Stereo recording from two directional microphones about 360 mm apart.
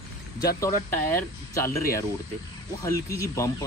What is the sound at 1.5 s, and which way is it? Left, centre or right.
Speech, centre.